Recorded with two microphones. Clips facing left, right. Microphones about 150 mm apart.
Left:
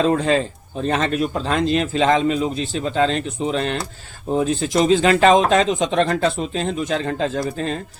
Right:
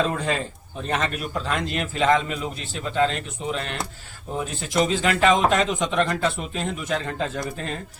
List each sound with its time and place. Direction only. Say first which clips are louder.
0.1 s a man's voice: left 8 dB; 30° left (ahead or behind)